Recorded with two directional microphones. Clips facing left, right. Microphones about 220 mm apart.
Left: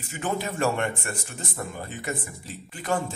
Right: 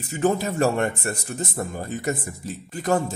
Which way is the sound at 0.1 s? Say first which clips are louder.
Right 7 dB; 40° right (ahead or behind).